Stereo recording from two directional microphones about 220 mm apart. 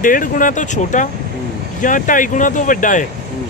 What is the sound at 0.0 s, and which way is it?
Speech, 40° left (ahead or behind).